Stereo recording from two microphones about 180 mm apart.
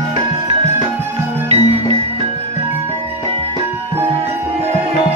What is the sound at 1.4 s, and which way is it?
Music, 35° right (ahead or behind).